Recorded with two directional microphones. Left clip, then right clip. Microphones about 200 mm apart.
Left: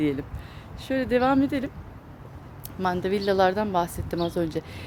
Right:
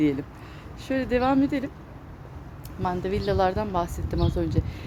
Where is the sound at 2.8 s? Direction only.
30° left (ahead or behind).